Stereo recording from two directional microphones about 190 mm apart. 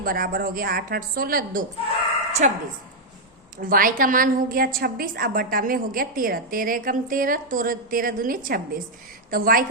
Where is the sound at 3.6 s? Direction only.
45° right (ahead or behind).